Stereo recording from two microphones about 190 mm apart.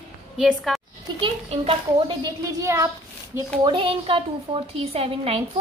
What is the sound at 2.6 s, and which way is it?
Speech, 15° right (ahead or behind).